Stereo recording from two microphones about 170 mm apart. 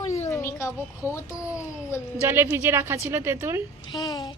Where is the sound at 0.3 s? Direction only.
15° left (ahead or behind).